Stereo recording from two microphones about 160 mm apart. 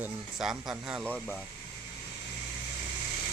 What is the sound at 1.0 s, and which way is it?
Speech, 10° left (ahead or behind).